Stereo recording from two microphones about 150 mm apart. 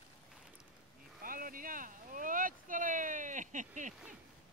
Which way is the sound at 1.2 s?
70° right (ahead or behind).